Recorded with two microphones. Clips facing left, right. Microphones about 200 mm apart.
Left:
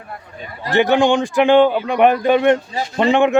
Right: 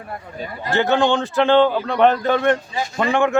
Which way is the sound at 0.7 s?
15° left (ahead or behind).